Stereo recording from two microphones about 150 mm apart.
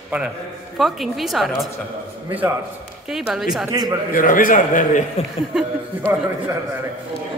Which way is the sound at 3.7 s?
25° right (ahead or behind).